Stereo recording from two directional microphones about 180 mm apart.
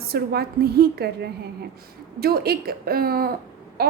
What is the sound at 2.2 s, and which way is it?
A woman's voice, 60° right (ahead or behind).